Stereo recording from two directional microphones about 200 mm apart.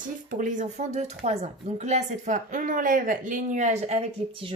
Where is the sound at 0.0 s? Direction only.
40° right (ahead or behind).